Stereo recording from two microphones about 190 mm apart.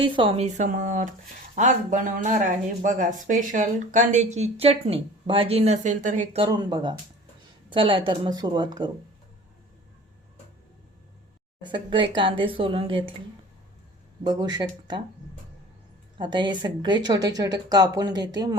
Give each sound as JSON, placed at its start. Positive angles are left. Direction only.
{"t": 0.0, "sound": "speech", "side_deg": -30}
{"t": 6.4, "sound": "a woman's voice", "side_deg": -20}
{"t": 11.6, "sound": "a woman's voice", "side_deg": -25}
{"t": 14.3, "sound": "a woman's voice", "side_deg": -20}
{"t": 16.1, "sound": "a woman's voice", "side_deg": -25}